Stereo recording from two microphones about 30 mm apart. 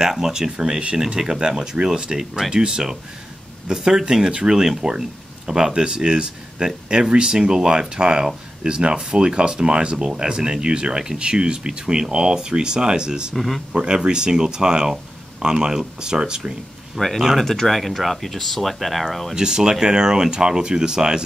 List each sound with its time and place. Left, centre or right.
0.0 s speech: centre
13.3 s speech: centre
13.7 s speech: right
17.0 s speech: centre
17.4 s speech: centre
19.3 s speech: right